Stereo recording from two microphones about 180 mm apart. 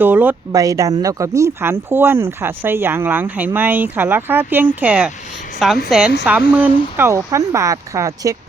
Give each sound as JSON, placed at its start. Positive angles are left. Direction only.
{"t": 0.0, "sound": "a woman's voice", "side_deg": -10}
{"t": 6.5, "sound": "speech", "side_deg": -10}